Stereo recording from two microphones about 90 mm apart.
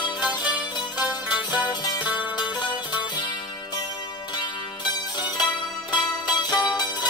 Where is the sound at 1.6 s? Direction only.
55° left (ahead or behind).